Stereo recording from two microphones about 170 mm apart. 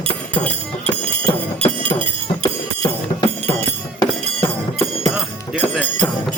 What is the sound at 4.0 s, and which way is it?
Music, 20° left (ahead or behind).